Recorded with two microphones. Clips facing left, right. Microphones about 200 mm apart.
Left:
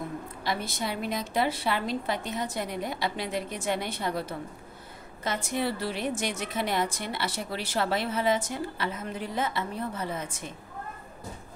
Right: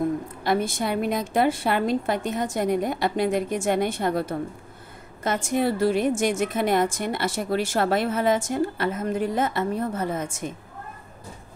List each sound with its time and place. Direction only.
0.4 s a woman's voice: 50° right (ahead or behind)